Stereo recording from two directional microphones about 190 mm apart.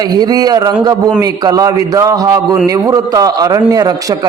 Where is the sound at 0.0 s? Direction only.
20° right (ahead or behind).